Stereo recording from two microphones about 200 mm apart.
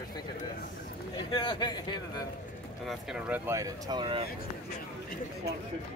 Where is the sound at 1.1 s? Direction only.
25° left (ahead or behind).